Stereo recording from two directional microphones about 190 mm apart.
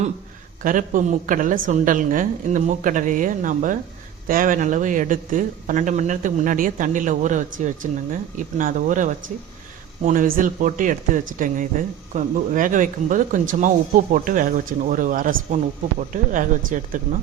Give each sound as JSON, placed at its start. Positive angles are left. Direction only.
{"t": 0.6, "sound": "speech", "side_deg": -45}